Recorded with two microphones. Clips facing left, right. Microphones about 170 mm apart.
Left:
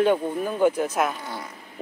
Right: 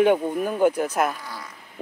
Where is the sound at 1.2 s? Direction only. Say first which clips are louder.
Left 3 dB; 25° left (ahead or behind).